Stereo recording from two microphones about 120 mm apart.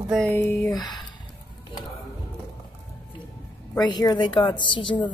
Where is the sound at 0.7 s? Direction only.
35° left (ahead or behind).